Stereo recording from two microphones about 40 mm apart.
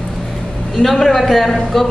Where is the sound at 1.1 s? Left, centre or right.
Centre.